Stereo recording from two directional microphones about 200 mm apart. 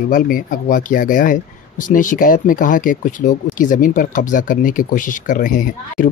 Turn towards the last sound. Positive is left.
turn(degrees=40)  # may be behind; listen again after turning